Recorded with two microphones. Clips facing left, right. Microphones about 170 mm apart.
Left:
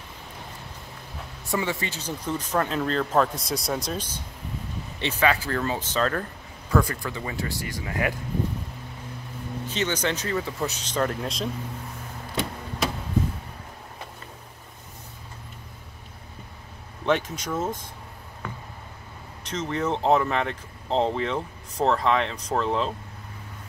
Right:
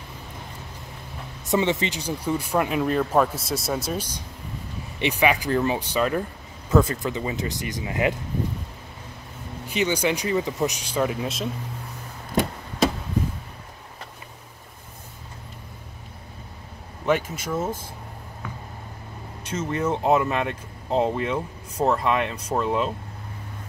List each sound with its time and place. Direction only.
1.5 s speech: 20° right (ahead or behind)
6.7 s speech: 20° right (ahead or behind)
9.7 s speech: 10° right (ahead or behind)
17.0 s speech: 5° right (ahead or behind)
19.5 s speech: 10° right (ahead or behind)